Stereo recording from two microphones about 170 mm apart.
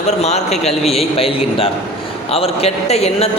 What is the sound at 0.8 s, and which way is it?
A man's voice, 35° left (ahead or behind).